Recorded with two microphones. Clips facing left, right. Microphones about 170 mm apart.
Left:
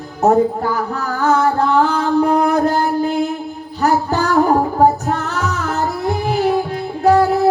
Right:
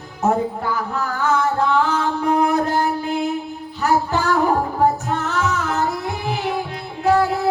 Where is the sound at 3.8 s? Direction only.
40° left (ahead or behind).